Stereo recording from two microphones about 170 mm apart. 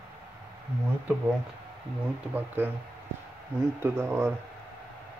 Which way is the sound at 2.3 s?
10° right (ahead or behind).